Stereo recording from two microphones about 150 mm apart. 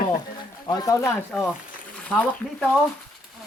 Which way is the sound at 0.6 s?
25° left (ahead or behind).